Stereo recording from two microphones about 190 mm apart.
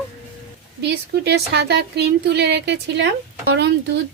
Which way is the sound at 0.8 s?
60° right (ahead or behind).